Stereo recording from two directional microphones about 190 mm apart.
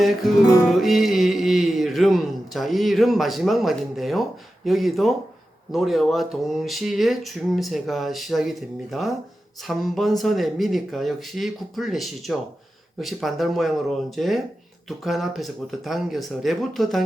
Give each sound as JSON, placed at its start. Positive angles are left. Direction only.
{"t": 0.0, "sound": "speech", "side_deg": 0}